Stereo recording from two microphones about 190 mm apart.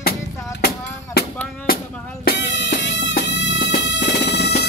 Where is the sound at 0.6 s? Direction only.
55° left (ahead or behind).